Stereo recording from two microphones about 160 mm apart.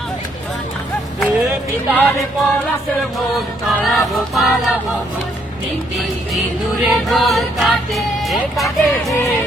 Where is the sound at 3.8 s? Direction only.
Centre (ahead or behind).